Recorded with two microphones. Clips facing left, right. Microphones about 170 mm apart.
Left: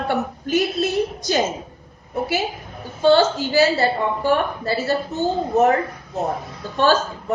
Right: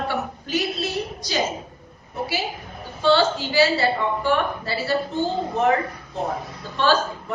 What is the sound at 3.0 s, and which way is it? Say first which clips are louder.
A woman's voice: left 4 dB; 45° left (ahead or behind).